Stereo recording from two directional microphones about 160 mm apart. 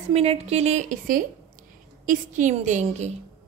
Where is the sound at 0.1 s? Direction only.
40° right (ahead or behind).